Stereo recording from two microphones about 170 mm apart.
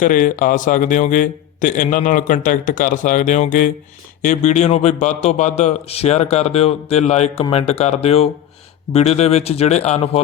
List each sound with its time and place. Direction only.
0.0 s a man's voice: 50° left (ahead or behind)